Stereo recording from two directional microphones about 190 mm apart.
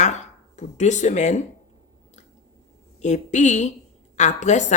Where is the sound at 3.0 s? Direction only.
40° left (ahead or behind).